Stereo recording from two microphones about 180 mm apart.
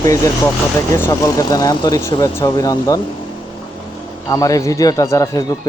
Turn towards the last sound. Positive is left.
turn(degrees=20)  # may be behind; listen again after turning